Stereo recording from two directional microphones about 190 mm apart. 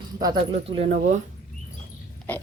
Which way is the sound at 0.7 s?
30° right (ahead or behind).